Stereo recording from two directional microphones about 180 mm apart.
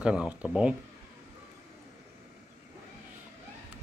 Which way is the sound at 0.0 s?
5° right (ahead or behind).